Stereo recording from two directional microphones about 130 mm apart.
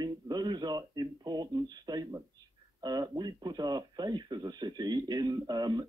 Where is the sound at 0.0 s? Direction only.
35° right (ahead or behind).